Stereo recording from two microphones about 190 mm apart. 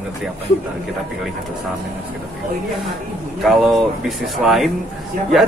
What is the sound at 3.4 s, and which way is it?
A man's voice, centre (ahead or behind).